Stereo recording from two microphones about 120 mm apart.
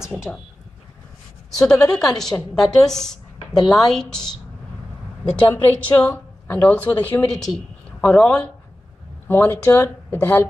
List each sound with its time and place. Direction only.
1.7 s a woman's voice: 5° left (ahead or behind)
5.3 s a woman's voice: 15° left (ahead or behind)